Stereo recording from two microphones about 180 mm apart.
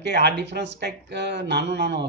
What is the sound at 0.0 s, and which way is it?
Speech, 70° right (ahead or behind).